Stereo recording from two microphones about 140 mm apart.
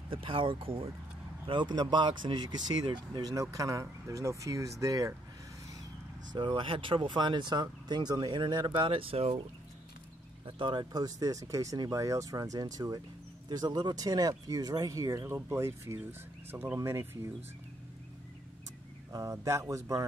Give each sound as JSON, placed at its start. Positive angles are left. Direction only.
{"t": 0.1, "sound": "speech", "side_deg": -40}
{"t": 6.3, "sound": "speech", "side_deg": -35}
{"t": 10.4, "sound": "speech", "side_deg": -35}
{"t": 19.1, "sound": "speech", "side_deg": -25}